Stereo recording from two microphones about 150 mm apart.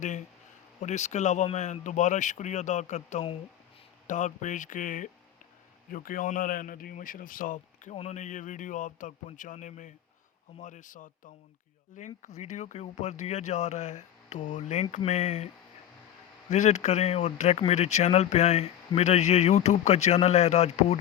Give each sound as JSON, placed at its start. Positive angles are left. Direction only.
{"t": 0.0, "sound": "a man's voice", "side_deg": 55}
{"t": 7.9, "sound": "speech", "side_deg": 50}
{"t": 16.5, "sound": "speech", "side_deg": 50}